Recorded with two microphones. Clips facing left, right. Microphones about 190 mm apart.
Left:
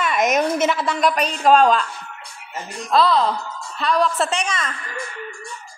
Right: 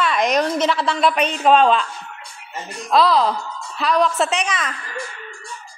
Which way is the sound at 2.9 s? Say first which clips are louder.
Right 1 dB; centre (ahead or behind).